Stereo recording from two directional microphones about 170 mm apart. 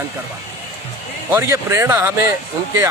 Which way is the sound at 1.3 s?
15° right (ahead or behind).